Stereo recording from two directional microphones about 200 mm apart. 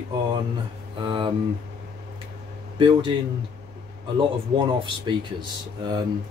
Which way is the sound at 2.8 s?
25° right (ahead or behind).